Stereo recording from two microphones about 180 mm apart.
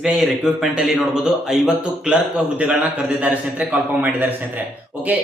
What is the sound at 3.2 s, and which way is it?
A man's voice, 10° right (ahead or behind).